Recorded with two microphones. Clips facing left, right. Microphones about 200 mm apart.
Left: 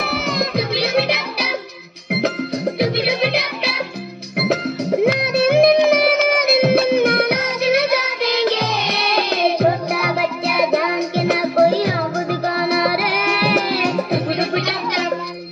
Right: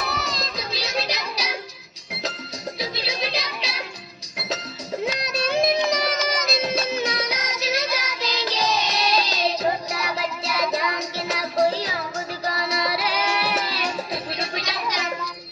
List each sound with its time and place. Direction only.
0.0 s music: 60° left (ahead or behind)